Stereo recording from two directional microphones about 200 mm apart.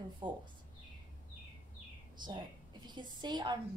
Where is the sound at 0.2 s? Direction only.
20° right (ahead or behind).